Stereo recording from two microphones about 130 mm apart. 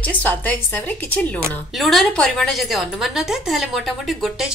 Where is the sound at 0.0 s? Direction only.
10° left (ahead or behind).